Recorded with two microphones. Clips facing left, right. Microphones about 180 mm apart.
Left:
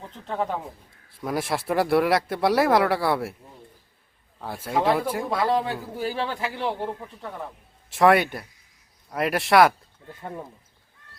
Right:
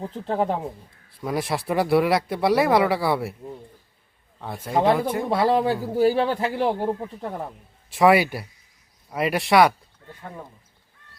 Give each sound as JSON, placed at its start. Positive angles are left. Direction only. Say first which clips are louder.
{"t": 0.0, "sound": "speech", "louder": "right 5 dB", "side_deg": -35}
{"t": 1.1, "sound": "speech", "louder": "right 1 dB", "side_deg": 0}
{"t": 4.4, "sound": "speech", "louder": "right 2 dB", "side_deg": 5}
{"t": 5.3, "sound": "speech", "louder": "right 4 dB", "side_deg": -30}
{"t": 7.9, "sound": "speech", "louder": "right 1 dB", "side_deg": 0}